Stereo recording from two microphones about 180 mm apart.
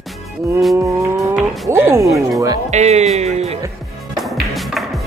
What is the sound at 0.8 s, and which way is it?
Vehicle, 15° right (ahead or behind).